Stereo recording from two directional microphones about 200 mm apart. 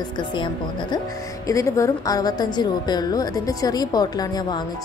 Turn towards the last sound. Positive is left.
turn(degrees=20)  # may be behind; listen again after turning